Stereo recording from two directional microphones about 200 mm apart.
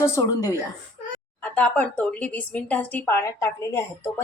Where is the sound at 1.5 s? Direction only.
5° left (ahead or behind).